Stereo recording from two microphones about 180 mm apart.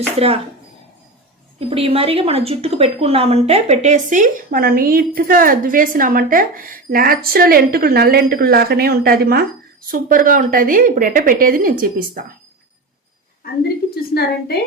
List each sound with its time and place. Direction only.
1.5 s speech: 30° right (ahead or behind); by 12.2 s 55° right (ahead or behind)
13.9 s a woman's voice: 60° left (ahead or behind)